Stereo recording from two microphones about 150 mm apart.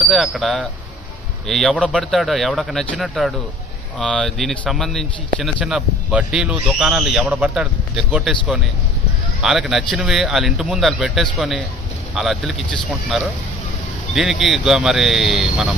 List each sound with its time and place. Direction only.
0.1 s speech: centre (ahead or behind)
14.1 s speech: 5° right (ahead or behind)